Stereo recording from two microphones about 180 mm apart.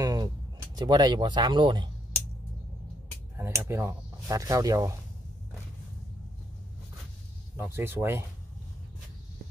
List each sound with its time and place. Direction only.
0.0 s a sound: 20° right (ahead or behind)
0.7 s speech: 25° right (ahead or behind)
3.3 s speech: 15° right (ahead or behind)
7.5 s speech: 15° right (ahead or behind)